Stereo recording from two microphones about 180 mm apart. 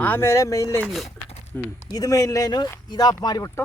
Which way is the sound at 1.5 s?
10° left (ahead or behind).